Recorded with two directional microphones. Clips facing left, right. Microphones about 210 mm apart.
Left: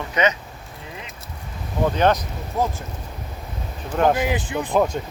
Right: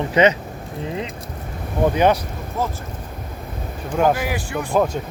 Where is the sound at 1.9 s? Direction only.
10° right (ahead or behind).